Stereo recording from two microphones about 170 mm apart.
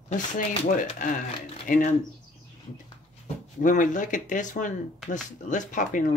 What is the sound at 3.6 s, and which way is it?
Speech, 50° left (ahead or behind).